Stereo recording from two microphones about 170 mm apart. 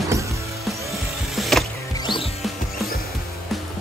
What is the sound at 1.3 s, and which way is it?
Music, centre (ahead or behind).